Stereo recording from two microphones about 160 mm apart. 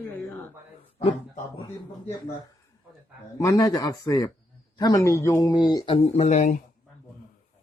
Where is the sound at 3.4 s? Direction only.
20° left (ahead or behind).